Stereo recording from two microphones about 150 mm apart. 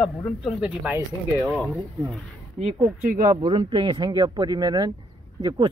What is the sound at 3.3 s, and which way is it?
Speech, 25° right (ahead or behind).